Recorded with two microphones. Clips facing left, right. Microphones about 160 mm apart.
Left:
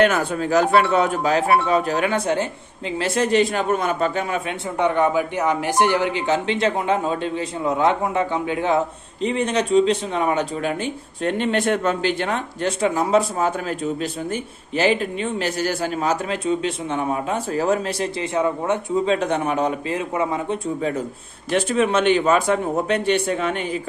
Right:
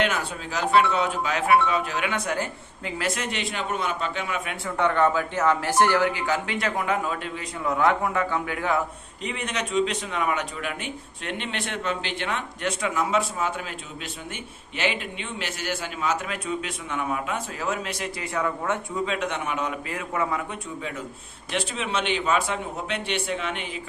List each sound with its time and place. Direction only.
0.0 s speech: 50° left (ahead or behind)
4.8 s speech: 15° left (ahead or behind); by 18.3 s 35° left (ahead or behind)
18.3 s speech: 20° left (ahead or behind)
19.0 s speech: 35° left (ahead or behind)
19.9 s speech: 25° left (ahead or behind)
21.5 s speech: 45° left (ahead or behind)